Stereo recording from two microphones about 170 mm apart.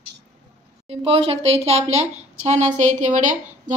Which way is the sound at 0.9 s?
35° right (ahead or behind).